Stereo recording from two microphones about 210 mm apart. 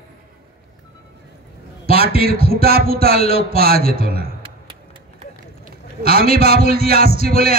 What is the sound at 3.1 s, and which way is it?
Speech, 30° left (ahead or behind).